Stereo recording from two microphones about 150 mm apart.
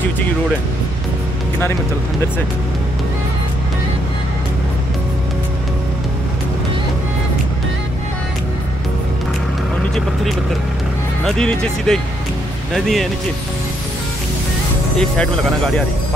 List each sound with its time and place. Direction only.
11.2 s speech: 5° left (ahead or behind)
15.0 s speech: 5° left (ahead or behind)